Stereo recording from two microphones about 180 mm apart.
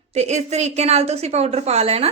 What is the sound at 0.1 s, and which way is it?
A woman's voice, 40° right (ahead or behind).